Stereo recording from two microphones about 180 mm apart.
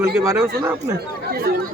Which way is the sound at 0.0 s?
15° right (ahead or behind).